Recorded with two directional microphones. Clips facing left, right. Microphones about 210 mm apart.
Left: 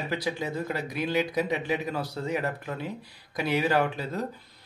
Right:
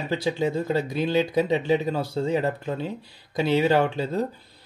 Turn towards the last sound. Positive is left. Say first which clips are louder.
# right 5 dB
turn(degrees=-30)  # may be behind; listen again after turning